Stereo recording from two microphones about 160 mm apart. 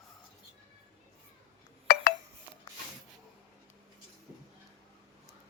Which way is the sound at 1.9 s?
70° left (ahead or behind).